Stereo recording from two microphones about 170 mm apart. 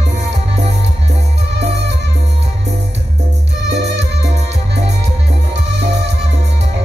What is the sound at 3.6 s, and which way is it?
Music, 90° right.